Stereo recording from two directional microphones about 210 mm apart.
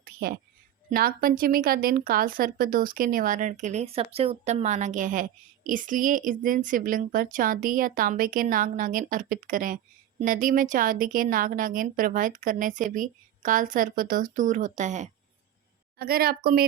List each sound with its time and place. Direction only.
0.0 s a sound: 45° right (ahead or behind)
0.9 s a woman's voice: 45° right (ahead or behind)
16.0 s a woman's voice: 45° right (ahead or behind)